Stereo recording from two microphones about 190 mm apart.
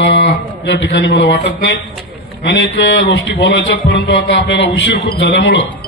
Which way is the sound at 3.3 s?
75° left (ahead or behind).